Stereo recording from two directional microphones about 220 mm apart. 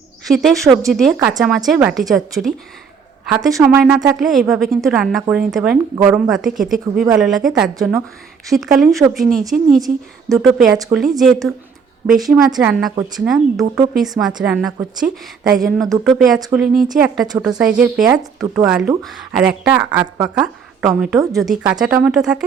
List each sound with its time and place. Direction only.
0.3 s speech: centre (ahead or behind)